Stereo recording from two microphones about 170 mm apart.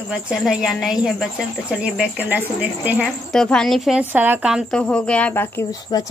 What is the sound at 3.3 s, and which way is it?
A woman's voice, 5° left (ahead or behind).